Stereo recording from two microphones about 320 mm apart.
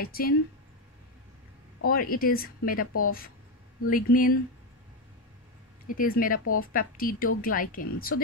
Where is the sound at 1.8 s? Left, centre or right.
Left.